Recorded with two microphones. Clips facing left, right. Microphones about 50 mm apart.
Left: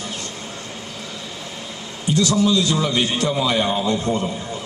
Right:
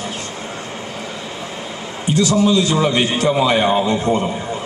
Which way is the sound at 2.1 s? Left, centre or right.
Right.